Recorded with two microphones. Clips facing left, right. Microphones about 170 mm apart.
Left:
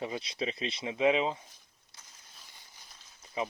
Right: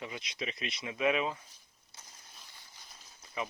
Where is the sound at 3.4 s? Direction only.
30° left (ahead or behind).